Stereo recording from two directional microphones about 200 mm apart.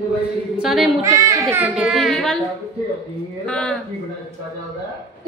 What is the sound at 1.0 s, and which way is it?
A woman's voice, 15° right (ahead or behind).